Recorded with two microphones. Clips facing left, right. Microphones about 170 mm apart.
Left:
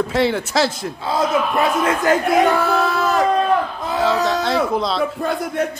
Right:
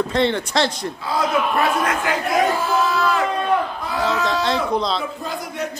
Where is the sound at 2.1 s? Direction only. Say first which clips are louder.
Left 6 dB; 45° left (ahead or behind).